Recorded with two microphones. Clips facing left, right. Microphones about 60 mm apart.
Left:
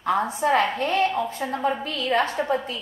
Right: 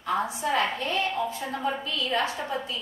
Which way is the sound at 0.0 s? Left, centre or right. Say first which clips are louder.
Left 5 dB; left.